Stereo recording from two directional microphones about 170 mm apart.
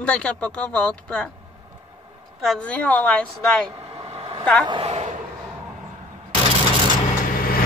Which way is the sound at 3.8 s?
35° right (ahead or behind).